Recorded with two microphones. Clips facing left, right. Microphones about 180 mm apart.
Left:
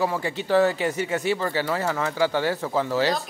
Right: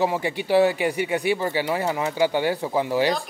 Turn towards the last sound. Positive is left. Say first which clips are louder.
# right 1 dB
turn(degrees=-15)  # may be behind; listen again after turning